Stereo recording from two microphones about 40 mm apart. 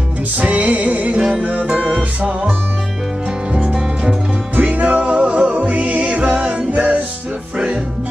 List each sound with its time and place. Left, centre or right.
0.4 s music: right
3.5 s music: centre
4.6 s music: right